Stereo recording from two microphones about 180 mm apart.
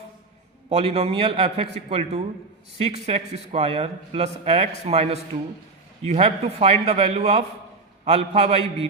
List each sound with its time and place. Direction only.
0.7 s a man's voice: 35° right (ahead or behind)